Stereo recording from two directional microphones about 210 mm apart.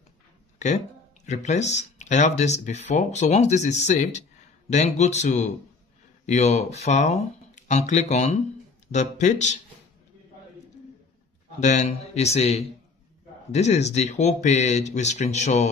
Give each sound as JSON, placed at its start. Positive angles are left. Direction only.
{"t": 1.2, "sound": "speech", "side_deg": 35}
{"t": 11.6, "sound": "speech", "side_deg": 35}